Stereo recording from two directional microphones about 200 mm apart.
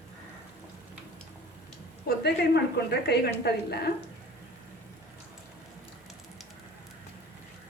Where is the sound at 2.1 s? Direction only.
50° left (ahead or behind).